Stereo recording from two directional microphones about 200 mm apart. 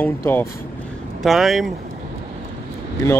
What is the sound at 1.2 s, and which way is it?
Speech, centre (ahead or behind).